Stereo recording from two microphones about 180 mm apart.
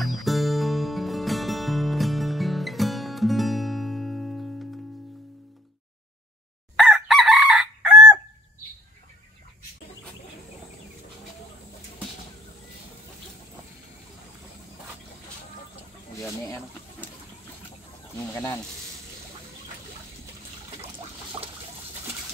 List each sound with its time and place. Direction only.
0.0 s music: centre (ahead or behind)
6.8 s chicken: centre (ahead or behind)
16.2 s a sound: 15° left (ahead or behind)
18.2 s snake: 15° left (ahead or behind)